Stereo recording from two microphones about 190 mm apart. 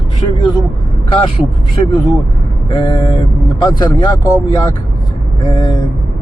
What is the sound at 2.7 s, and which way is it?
Speech, 25° left (ahead or behind).